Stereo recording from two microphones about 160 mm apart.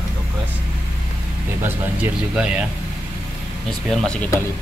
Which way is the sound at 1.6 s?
10° right (ahead or behind).